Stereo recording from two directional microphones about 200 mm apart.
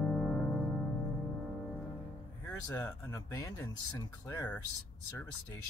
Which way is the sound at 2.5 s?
10° left (ahead or behind).